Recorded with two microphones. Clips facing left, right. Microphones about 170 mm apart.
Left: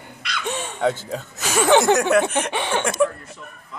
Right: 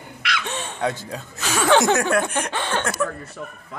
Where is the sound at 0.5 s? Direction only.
5° left (ahead or behind).